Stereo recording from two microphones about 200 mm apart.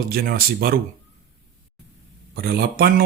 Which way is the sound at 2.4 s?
50° right (ahead or behind).